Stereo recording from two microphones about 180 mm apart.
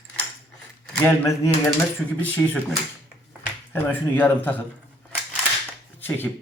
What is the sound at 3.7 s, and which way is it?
Speech, 10° left (ahead or behind).